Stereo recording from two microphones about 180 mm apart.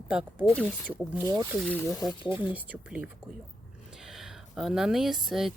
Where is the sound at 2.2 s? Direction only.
30° left (ahead or behind).